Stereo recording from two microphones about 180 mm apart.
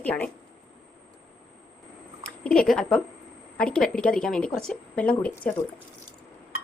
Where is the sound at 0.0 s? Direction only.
10° left (ahead or behind).